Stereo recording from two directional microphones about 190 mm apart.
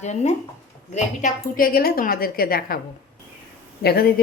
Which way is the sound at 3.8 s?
55° left (ahead or behind).